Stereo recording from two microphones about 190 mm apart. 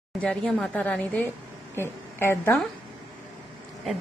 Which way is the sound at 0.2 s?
5° left (ahead or behind).